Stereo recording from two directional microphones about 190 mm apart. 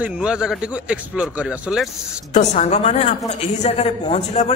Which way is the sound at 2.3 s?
40° left (ahead or behind).